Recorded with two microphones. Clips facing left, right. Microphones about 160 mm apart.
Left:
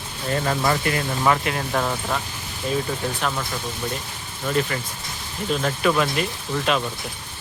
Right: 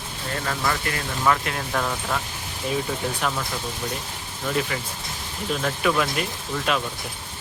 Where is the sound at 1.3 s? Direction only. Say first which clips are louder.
Left 1 dB; 5° left (ahead or behind).